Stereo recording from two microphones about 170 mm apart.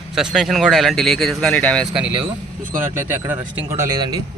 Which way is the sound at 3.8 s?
20° right (ahead or behind).